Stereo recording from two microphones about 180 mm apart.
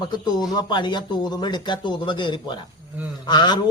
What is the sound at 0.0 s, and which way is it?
A man's voice, 25° left (ahead or behind).